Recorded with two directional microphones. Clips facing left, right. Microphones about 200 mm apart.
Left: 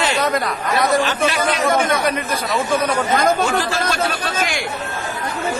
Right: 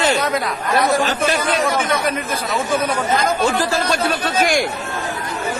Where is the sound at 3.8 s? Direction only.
50° left (ahead or behind).